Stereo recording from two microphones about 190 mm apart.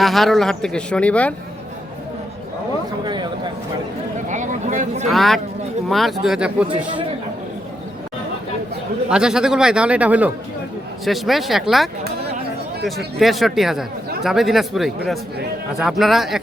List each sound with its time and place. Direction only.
0.0 s speech: centre (ahead or behind)
3.0 s speech: 25° right (ahead or behind)
4.3 s speech: 40° right (ahead or behind)
5.1 s speech: centre (ahead or behind)
9.0 s speech: 5° right (ahead or behind)
13.1 s speech: centre (ahead or behind)